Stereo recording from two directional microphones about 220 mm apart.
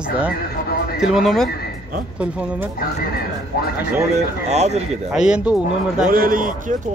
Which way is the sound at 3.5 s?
45° left (ahead or behind).